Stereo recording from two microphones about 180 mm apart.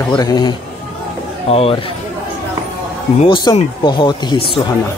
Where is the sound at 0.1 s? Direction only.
25° left (ahead or behind).